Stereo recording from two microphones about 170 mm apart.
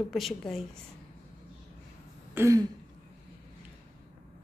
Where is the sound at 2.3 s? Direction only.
20° right (ahead or behind).